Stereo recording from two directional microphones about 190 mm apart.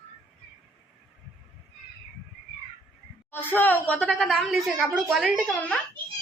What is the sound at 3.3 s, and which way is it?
A woman's voice, 10° left (ahead or behind).